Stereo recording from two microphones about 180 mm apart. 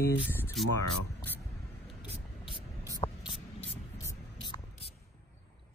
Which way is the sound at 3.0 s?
30° left (ahead or behind).